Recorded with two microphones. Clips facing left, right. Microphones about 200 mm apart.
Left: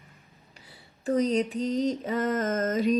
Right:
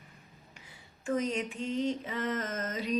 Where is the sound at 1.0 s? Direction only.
35° left (ahead or behind).